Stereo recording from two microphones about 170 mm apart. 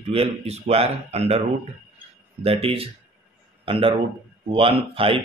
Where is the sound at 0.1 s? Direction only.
35° right (ahead or behind).